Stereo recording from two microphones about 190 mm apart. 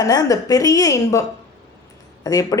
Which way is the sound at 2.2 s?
20° left (ahead or behind).